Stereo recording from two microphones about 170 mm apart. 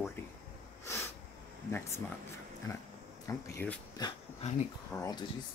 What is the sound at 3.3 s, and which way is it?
Speech, 20° left (ahead or behind).